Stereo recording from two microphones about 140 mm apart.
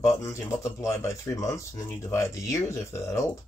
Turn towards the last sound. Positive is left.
turn(degrees=20)  # may be behind; listen again after turning